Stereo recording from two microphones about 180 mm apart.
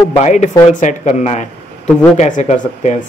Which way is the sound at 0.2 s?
40° left (ahead or behind).